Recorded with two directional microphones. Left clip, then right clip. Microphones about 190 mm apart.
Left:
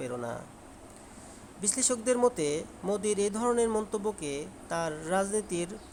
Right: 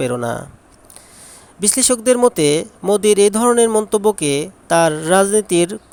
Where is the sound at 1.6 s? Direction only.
45° right (ahead or behind).